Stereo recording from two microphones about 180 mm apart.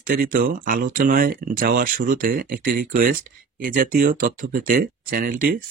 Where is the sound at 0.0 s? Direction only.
55° right (ahead or behind).